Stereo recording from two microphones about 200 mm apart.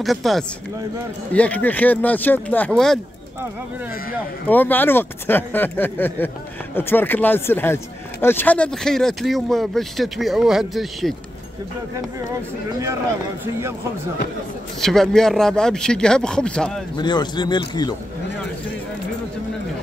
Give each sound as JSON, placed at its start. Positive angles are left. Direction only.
{"t": 0.0, "sound": "speech", "side_deg": 0}
{"t": 4.5, "sound": "speech", "side_deg": 10}
{"t": 14.8, "sound": "speech", "side_deg": 0}
{"t": 16.9, "sound": "speech", "side_deg": 20}